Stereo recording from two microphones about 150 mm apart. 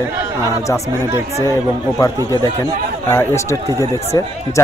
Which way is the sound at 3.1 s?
15° left (ahead or behind).